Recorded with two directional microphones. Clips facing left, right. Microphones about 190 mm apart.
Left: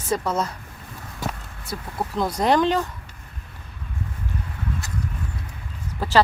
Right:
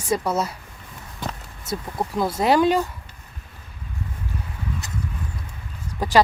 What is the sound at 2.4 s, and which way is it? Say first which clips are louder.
Speech: right 2 dB; 10° right (ahead or behind).